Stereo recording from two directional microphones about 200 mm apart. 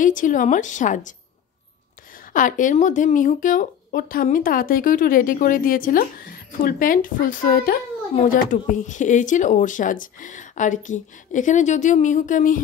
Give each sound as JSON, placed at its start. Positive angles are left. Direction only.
{"t": 0.0, "sound": "speech", "side_deg": 40}
{"t": 2.3, "sound": "speech", "side_deg": 40}